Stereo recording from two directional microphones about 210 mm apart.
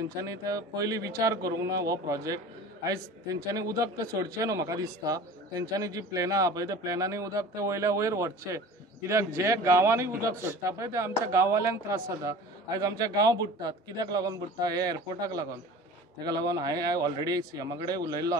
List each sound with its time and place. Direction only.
0.2 s speech: 15° right (ahead or behind)
16.4 s speech: 20° right (ahead or behind)